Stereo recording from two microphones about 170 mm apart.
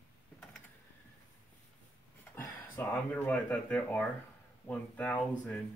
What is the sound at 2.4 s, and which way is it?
Speech, 10° left (ahead or behind).